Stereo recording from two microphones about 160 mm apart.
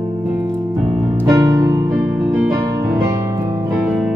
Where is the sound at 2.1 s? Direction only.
5° right (ahead or behind).